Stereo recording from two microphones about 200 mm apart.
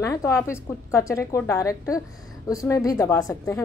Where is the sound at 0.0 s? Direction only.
15° left (ahead or behind).